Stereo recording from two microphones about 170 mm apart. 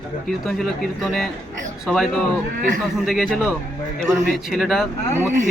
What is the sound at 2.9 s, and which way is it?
A man's voice, centre (ahead or behind).